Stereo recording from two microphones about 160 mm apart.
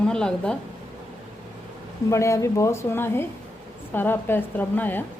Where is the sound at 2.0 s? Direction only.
20° left (ahead or behind).